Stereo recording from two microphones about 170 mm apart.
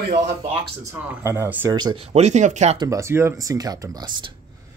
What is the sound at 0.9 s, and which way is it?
Speech, 15° right (ahead or behind).